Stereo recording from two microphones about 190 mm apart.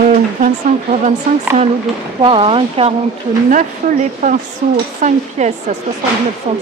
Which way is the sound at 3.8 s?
40° right (ahead or behind).